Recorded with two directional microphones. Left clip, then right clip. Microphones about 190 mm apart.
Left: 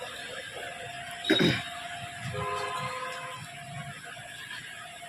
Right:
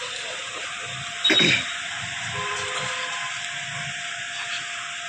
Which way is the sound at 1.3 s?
15° left (ahead or behind).